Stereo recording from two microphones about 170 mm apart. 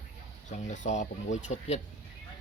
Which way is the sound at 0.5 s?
45° left (ahead or behind).